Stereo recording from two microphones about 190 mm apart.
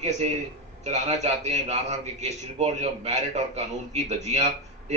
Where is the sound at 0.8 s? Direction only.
35° right (ahead or behind).